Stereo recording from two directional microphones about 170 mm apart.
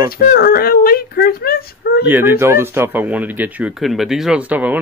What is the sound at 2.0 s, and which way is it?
Speech, 10° right (ahead or behind).